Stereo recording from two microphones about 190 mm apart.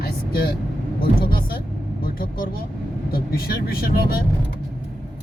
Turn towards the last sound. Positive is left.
turn(degrees=55)  # may be behind; listen again after turning